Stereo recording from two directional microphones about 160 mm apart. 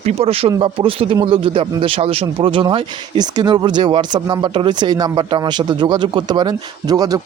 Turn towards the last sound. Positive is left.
turn(degrees=-25)  # may be behind; listen again after turning